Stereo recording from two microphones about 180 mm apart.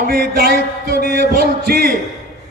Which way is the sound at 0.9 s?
55° right (ahead or behind).